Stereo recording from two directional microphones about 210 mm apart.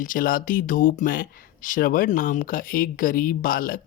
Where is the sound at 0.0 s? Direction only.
40° left (ahead or behind).